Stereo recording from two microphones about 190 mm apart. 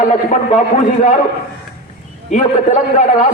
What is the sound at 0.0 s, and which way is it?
Speech, 40° left (ahead or behind).